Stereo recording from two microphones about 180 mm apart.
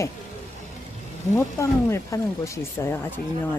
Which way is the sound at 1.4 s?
15° left (ahead or behind).